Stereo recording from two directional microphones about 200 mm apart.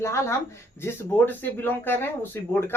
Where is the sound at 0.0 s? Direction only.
15° left (ahead or behind).